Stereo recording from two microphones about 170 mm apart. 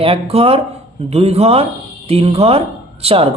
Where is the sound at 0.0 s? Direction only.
35° right (ahead or behind).